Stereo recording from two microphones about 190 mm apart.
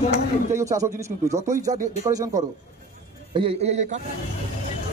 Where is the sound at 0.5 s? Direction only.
15° right (ahead or behind).